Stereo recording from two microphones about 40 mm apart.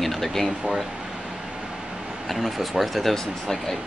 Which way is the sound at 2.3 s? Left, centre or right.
Centre.